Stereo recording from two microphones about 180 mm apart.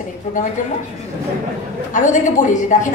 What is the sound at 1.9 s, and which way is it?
A woman's voice, 45° left (ahead or behind).